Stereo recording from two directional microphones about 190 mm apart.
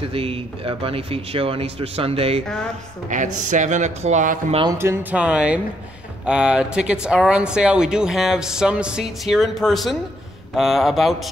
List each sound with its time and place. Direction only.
0.0 s speech: 30° right (ahead or behind)
3.1 s speech: 40° right (ahead or behind)
4.7 s speech: 10° right (ahead or behind)